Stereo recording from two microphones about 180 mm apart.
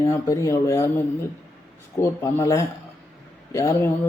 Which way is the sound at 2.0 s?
15° left (ahead or behind).